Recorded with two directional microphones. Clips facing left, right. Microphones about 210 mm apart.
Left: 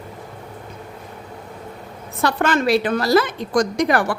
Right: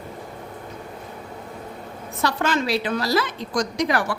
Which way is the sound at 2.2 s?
55° left (ahead or behind).